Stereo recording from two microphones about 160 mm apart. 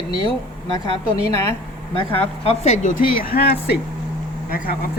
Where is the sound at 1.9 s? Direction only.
35° left (ahead or behind).